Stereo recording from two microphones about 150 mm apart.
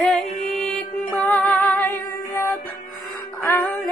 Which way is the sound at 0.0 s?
Centre (ahead or behind).